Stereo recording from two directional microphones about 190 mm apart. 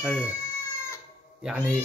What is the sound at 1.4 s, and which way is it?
Speech, 5° right (ahead or behind).